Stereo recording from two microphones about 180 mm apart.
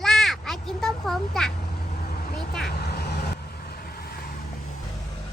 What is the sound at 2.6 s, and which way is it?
Vehicle, 65° left (ahead or behind).